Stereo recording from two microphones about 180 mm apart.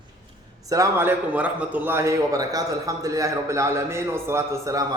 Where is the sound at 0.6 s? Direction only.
20° right (ahead or behind).